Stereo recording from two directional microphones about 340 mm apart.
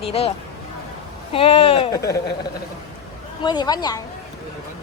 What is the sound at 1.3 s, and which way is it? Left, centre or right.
Speech, centre.